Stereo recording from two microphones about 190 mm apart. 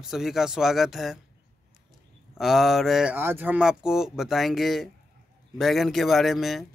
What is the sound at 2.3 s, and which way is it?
Speech, centre (ahead or behind).